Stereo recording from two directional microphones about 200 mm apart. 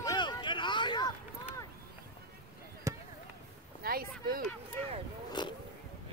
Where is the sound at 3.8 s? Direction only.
45° right (ahead or behind).